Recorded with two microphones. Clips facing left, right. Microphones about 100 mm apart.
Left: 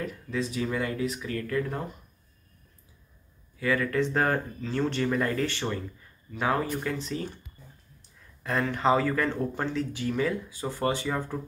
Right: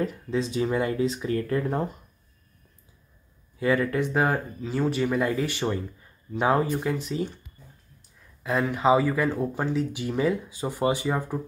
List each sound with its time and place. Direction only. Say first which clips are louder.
0.0 s speech: right 4 dB; 25° right (ahead or behind)
3.5 s speech: right 3 dB; 25° right (ahead or behind)
8.6 s speech: right 3 dB; 10° right (ahead or behind)